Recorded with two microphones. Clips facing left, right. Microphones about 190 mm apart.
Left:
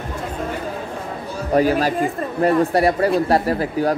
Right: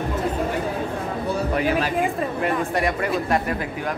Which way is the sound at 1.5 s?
40° left (ahead or behind).